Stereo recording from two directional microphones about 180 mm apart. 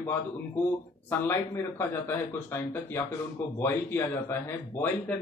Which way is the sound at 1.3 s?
15° left (ahead or behind).